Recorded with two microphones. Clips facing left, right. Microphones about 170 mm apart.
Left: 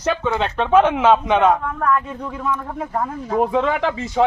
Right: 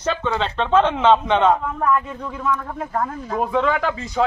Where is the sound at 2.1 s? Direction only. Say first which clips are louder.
Even; 15° left (ahead or behind).